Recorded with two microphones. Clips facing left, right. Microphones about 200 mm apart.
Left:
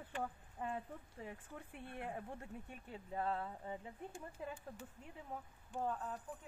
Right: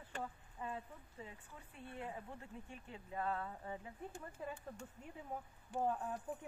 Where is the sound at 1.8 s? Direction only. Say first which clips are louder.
Left 1 dB; 65° left (ahead or behind).